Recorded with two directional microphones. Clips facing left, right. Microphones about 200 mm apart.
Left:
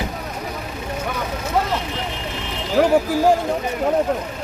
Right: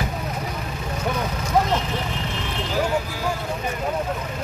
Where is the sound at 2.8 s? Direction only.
65° left (ahead or behind).